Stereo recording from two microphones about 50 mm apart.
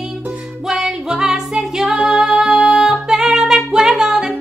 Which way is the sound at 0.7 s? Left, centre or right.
Centre.